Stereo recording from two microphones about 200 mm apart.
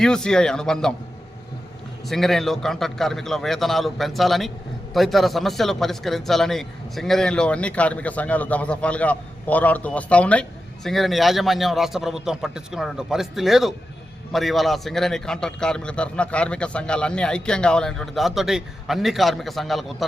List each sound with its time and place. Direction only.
0.0 s a man's voice: 5° left (ahead or behind)
2.0 s a man's voice: centre (ahead or behind)